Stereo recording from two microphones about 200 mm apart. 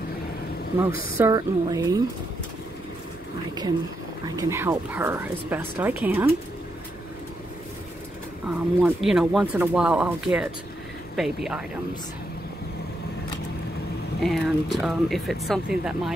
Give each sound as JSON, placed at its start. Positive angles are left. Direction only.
{"t": 1.1, "sound": "speech", "side_deg": -15}
{"t": 4.4, "sound": "speech", "side_deg": -15}
{"t": 8.5, "sound": "speech", "side_deg": -5}
{"t": 14.2, "sound": "speech", "side_deg": 0}